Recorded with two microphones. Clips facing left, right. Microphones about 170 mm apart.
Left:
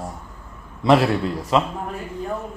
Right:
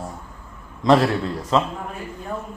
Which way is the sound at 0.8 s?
10° left (ahead or behind).